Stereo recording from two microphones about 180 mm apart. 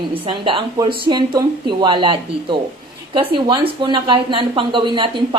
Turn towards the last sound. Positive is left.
turn(degrees=-25)  # may be behind; listen again after turning